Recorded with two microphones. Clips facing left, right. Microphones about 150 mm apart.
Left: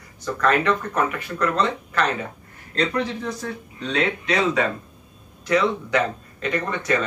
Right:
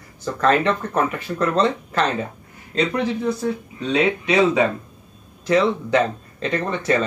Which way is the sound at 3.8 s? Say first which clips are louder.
Right 4 dB; 10° right (ahead or behind).